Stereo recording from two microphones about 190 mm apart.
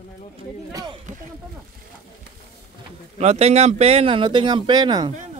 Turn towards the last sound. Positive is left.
turn(degrees=-20)  # may be behind; listen again after turning